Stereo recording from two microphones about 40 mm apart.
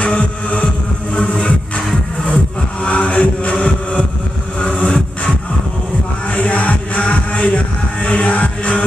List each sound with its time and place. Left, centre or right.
0.0 s music: left
2.8 s music: left
4.6 s vehicle: left
6.3 s music: left